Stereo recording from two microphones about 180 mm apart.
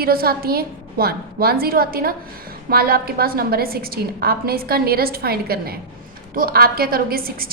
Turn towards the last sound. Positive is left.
turn(degrees=-55)  # may be behind; listen again after turning